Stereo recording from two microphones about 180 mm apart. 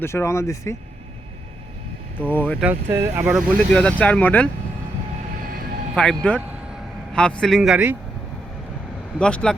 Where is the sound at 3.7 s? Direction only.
5° left (ahead or behind).